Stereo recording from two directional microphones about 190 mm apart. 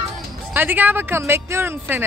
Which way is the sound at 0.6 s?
10° right (ahead or behind).